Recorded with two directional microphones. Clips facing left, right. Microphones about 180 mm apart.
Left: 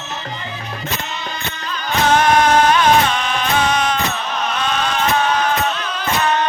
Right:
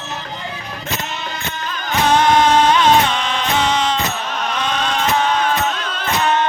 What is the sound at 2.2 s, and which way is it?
Music, 20° right (ahead or behind).